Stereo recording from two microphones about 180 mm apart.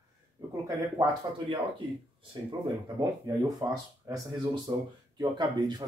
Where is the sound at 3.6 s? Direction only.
20° right (ahead or behind).